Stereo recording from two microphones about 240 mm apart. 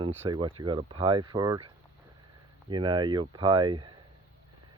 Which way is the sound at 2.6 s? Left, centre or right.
Centre.